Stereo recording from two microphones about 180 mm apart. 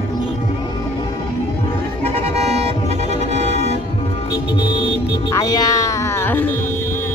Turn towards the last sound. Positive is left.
turn(degrees=10)  # may be behind; listen again after turning